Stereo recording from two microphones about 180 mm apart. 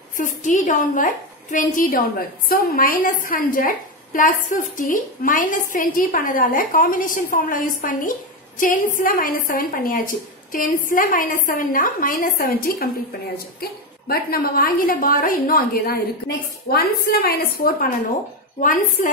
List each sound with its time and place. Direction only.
0.2 s a woman's voice: 45° left (ahead or behind)